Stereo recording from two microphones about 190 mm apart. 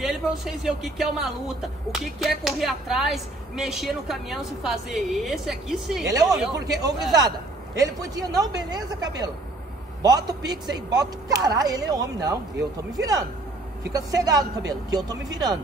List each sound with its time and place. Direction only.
0.0 s speech: centre (ahead or behind)
6.0 s a man's voice: 20° right (ahead or behind)